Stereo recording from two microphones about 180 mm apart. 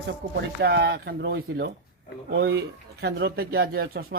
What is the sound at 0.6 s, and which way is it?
A man's voice, 70° right (ahead or behind).